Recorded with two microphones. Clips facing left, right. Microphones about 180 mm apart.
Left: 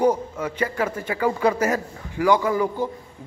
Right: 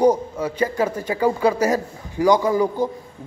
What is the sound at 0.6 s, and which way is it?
A man's voice, 15° right (ahead or behind).